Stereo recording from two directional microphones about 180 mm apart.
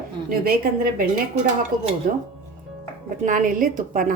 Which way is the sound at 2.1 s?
50° right (ahead or behind).